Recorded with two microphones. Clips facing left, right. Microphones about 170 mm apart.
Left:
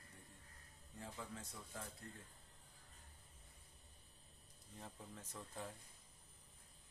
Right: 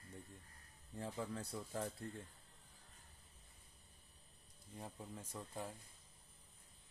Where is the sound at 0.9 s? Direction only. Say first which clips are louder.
Right 7 dB; 40° right (ahead or behind).